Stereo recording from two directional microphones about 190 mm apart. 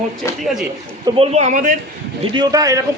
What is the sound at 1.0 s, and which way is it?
Speech, 30° right (ahead or behind).